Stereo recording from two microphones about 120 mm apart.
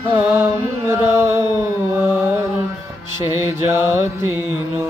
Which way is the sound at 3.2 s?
25° right (ahead or behind).